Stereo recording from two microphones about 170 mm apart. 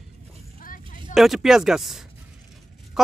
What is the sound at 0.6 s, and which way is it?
Vehicle, 55° left (ahead or behind).